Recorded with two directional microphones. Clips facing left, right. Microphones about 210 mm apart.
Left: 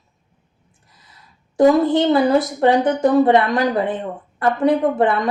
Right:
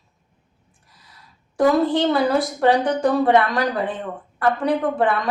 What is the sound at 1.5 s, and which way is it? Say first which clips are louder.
Speech: left 4 dB; 20° left (ahead or behind).